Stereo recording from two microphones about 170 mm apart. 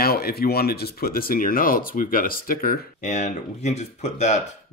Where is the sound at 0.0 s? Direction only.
65° left (ahead or behind).